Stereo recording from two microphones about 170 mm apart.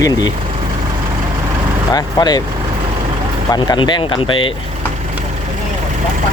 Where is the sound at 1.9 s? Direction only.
25° left (ahead or behind).